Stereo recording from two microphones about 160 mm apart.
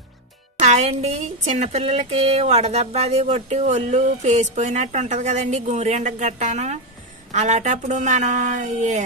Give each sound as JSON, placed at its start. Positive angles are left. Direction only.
{"t": 0.6, "sound": "music", "side_deg": -45}
{"t": 1.4, "sound": "speech", "side_deg": -50}